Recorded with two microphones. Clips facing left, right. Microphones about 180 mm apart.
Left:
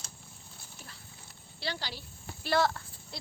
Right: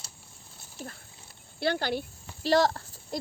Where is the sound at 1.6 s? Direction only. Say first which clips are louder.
Right 11 dB; 55° right (ahead or behind).